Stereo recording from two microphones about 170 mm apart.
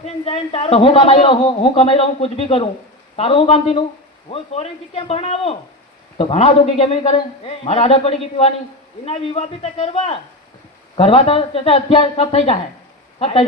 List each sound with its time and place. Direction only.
0.0 s a man's voice: 35° left (ahead or behind)